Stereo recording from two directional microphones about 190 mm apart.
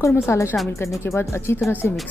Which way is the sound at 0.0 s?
15° left (ahead or behind).